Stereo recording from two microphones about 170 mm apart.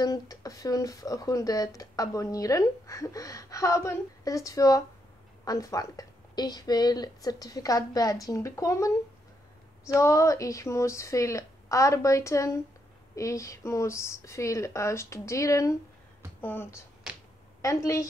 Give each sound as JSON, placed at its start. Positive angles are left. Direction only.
{"t": 0.0, "sound": "speech", "side_deg": 20}
{"t": 9.9, "sound": "speech", "side_deg": 20}
{"t": 17.1, "sound": "a sound", "side_deg": -5}
{"t": 17.6, "sound": "speech", "side_deg": 20}